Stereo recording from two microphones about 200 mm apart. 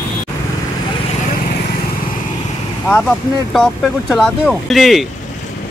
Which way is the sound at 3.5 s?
Centre (ahead or behind).